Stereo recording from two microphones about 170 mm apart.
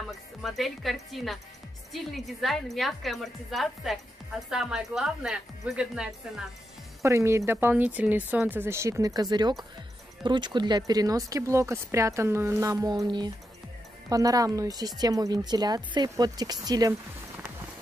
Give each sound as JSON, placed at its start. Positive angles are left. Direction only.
{"t": 0.4, "sound": "a woman's voice", "side_deg": 0}
{"t": 7.0, "sound": "speech", "side_deg": -15}